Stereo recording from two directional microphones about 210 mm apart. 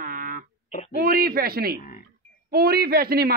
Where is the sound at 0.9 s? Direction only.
45° right (ahead or behind).